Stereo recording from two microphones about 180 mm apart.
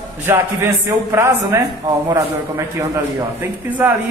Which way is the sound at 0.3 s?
15° right (ahead or behind).